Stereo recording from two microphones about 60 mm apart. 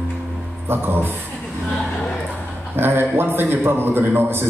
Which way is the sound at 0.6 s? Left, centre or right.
Right.